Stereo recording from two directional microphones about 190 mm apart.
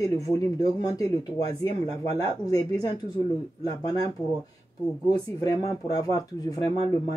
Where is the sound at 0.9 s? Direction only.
20° left (ahead or behind).